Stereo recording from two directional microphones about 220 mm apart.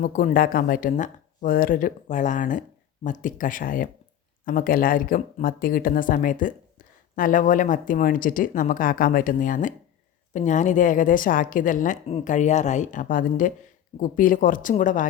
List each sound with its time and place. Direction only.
0.0 s speech: 40° left (ahead or behind)